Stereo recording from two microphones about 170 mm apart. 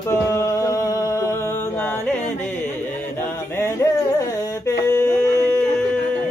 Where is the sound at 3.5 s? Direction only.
15° left (ahead or behind).